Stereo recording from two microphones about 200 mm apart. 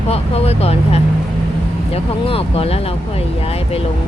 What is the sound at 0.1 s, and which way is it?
Speech, 30° left (ahead or behind).